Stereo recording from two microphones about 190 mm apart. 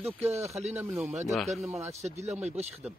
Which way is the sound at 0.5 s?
35° right (ahead or behind).